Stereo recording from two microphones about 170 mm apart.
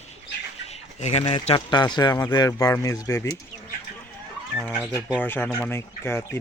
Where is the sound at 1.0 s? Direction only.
40° left (ahead or behind); by 3.4 s 15° left (ahead or behind).